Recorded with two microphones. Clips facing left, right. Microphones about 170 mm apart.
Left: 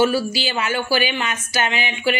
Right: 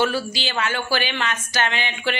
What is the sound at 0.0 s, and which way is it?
A woman's voice, 5° left (ahead or behind).